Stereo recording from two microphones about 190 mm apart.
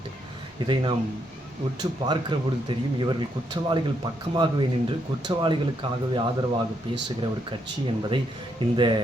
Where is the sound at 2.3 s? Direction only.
25° right (ahead or behind).